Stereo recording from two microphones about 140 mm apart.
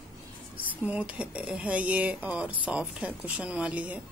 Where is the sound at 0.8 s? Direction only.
10° right (ahead or behind).